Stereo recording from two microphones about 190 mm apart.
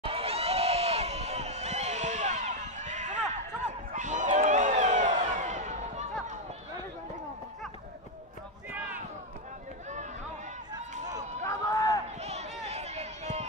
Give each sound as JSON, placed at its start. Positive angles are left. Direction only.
{"t": 0.0, "sound": "a sound", "side_deg": -30}
{"t": 11.4, "sound": "run", "side_deg": 15}
{"t": 12.2, "sound": "run", "side_deg": -35}